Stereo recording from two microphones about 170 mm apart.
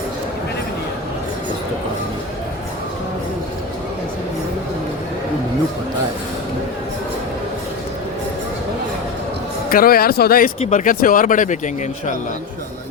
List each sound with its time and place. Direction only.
9.6 s speech: 60° left (ahead or behind)
10.6 s speech: 45° left (ahead or behind)